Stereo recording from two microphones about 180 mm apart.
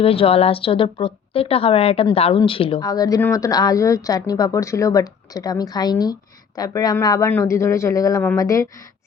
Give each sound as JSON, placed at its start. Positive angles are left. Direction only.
{"t": 0.0, "sound": "a woman's voice", "side_deg": 30}
{"t": 2.8, "sound": "speech", "side_deg": 20}